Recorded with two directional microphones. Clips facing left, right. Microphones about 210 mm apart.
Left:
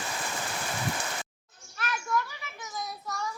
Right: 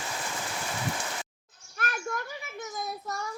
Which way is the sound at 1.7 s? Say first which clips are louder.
Left 2 dB; 50° right (ahead or behind).